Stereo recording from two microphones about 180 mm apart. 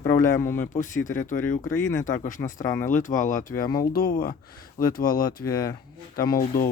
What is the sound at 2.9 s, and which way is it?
Speech, 45° left (ahead or behind).